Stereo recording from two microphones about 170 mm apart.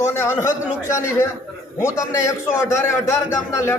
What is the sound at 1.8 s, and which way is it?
A man's voice, 15° left (ahead or behind).